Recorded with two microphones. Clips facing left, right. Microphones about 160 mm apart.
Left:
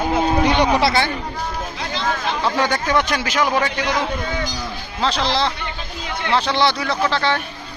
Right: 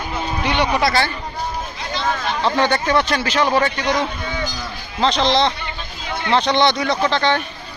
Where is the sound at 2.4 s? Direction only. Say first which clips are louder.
Right 4 dB; 10° left (ahead or behind).